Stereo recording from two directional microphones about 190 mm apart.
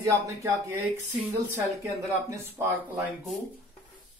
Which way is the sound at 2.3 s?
15° right (ahead or behind).